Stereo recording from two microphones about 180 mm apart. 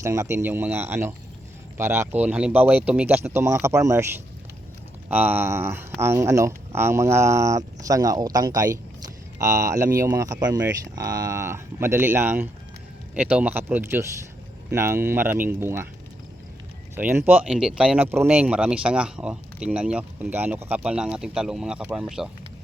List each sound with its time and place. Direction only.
0.0 s speech: 15° right (ahead or behind)
16.9 s speech: 15° right (ahead or behind)